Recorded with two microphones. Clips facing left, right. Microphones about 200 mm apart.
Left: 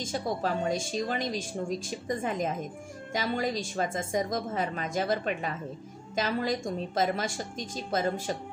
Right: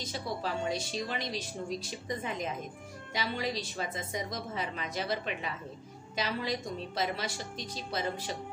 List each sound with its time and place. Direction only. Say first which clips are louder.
0.0 s a woman's voice: left 5 dB; 45° left (ahead or behind)